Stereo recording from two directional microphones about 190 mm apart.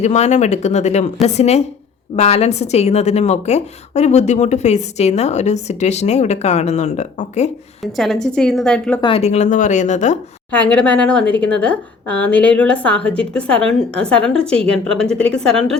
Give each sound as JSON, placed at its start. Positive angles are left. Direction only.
{"t": 0.0, "sound": "a woman's voice", "side_deg": 35}
{"t": 7.9, "sound": "a woman's voice", "side_deg": 0}
{"t": 9.0, "sound": "a woman's voice", "side_deg": 30}
{"t": 10.5, "sound": "a woman's voice", "side_deg": 5}